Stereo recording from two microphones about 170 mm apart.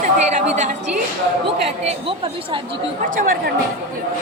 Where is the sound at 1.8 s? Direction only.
35° right (ahead or behind).